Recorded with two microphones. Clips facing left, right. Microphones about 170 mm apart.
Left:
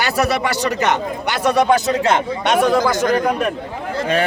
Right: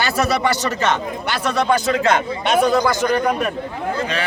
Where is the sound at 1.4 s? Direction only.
15° left (ahead or behind).